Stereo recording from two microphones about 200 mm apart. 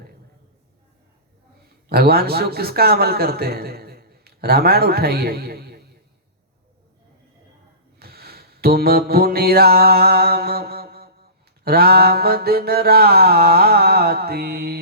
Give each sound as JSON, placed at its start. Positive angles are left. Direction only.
{"t": 1.9, "sound": "a man's voice", "side_deg": -50}
{"t": 7.9, "sound": "music", "side_deg": -50}
{"t": 11.6, "sound": "mantra", "side_deg": -50}